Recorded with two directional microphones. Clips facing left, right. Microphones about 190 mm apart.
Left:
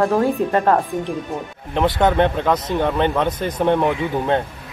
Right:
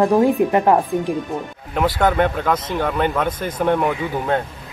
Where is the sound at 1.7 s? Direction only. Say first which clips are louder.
Left 1 dB; 20° left (ahead or behind).